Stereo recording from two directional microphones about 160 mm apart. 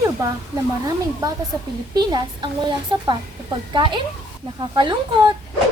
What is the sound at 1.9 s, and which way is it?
A woman's voice, 25° right (ahead or behind).